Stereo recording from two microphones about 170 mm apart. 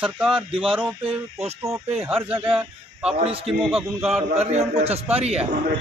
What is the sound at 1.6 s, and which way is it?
A man's voice, 15° right (ahead or behind).